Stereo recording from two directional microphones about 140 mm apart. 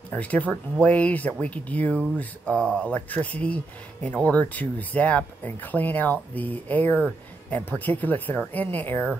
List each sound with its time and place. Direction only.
0.1 s speech: 10° left (ahead or behind)